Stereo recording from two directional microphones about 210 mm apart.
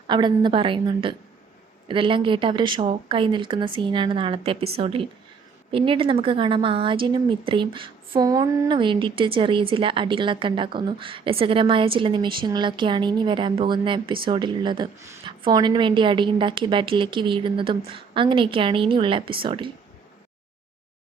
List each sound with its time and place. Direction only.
0.1 s a woman's voice: 20° right (ahead or behind)